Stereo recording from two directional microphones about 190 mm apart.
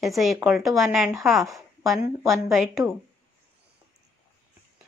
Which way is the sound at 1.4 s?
15° right (ahead or behind).